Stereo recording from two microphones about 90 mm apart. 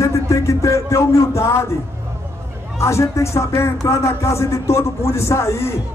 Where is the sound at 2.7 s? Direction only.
35° left (ahead or behind).